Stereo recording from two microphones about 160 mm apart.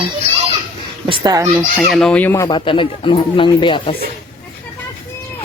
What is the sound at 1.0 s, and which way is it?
Speech, 30° right (ahead or behind).